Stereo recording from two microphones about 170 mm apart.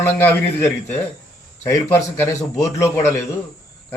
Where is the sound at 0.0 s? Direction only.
15° left (ahead or behind).